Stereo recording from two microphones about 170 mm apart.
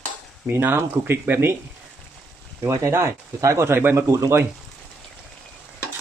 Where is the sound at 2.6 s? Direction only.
15° right (ahead or behind).